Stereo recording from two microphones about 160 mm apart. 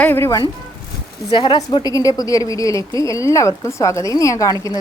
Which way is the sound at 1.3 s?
30° left (ahead or behind).